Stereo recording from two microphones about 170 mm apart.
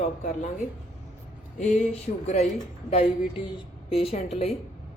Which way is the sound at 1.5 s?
40° left (ahead or behind).